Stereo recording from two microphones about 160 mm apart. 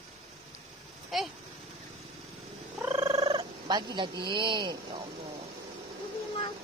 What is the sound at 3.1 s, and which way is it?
Speech, 35° right (ahead or behind).